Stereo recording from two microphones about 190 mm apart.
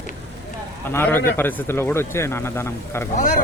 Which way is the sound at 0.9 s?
10° left (ahead or behind).